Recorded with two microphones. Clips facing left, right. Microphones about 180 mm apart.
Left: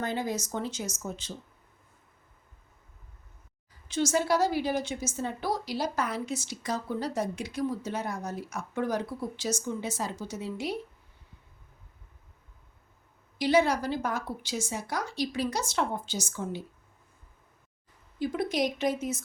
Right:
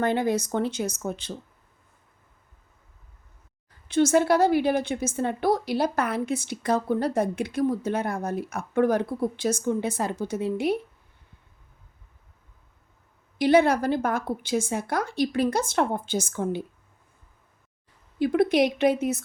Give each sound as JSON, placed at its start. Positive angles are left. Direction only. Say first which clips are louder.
{"t": 0.0, "sound": "a woman's voice", "louder": "right 8 dB", "side_deg": -60}
{"t": 3.8, "sound": "a woman's voice", "louder": "right 7 dB", "side_deg": -60}
{"t": 13.4, "sound": "a woman's voice", "louder": "right 5 dB", "side_deg": -55}
{"t": 18.2, "sound": "a woman's voice", "louder": "right 8 dB", "side_deg": -65}